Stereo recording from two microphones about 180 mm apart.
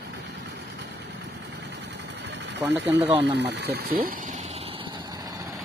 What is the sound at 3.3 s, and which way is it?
Speech, 65° right (ahead or behind).